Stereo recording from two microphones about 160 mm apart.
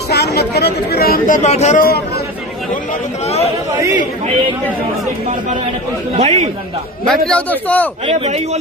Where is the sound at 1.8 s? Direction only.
80° left.